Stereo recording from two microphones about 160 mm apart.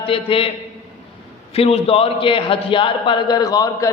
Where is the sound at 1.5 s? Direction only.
40° left (ahead or behind).